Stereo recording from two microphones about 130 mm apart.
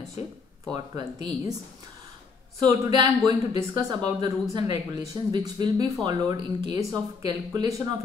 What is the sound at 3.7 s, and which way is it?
Speech, 35° right (ahead or behind).